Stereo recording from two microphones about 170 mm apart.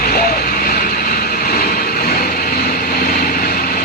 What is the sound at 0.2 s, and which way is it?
Vehicle, 65° left (ahead or behind).